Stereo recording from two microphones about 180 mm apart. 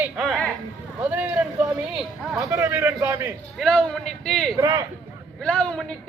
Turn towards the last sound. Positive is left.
turn(degrees=5)  # may be behind; listen again after turning